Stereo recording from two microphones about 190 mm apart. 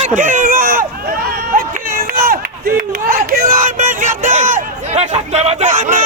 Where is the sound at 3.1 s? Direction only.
50° right (ahead or behind).